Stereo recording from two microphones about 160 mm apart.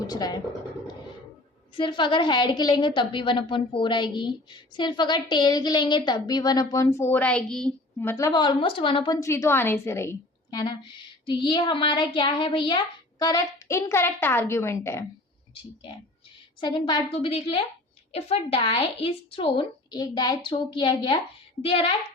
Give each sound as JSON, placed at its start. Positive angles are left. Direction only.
{"t": 0.1, "sound": "a woman's voice", "side_deg": 25}
{"t": 1.7, "sound": "a woman's voice", "side_deg": 30}
{"t": 7.9, "sound": "a woman's voice", "side_deg": 15}
{"t": 9.2, "sound": "a woman's voice", "side_deg": 15}
{"t": 16.6, "sound": "a woman's voice", "side_deg": 30}